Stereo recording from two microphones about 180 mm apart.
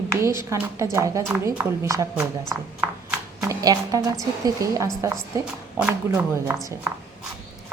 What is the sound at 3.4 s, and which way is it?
A woman's voice, 20° right (ahead or behind).